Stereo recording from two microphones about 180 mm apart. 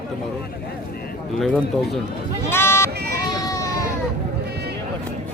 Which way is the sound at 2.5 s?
15° left (ahead or behind).